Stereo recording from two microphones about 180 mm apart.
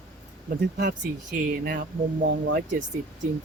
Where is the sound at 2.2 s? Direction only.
65° right (ahead or behind).